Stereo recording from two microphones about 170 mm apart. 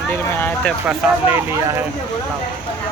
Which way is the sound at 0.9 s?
15° right (ahead or behind).